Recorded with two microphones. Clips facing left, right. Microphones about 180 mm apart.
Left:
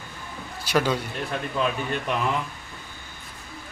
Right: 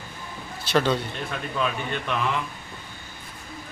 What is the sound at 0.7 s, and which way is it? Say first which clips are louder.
Speech: right 1 dB; 10° left (ahead or behind).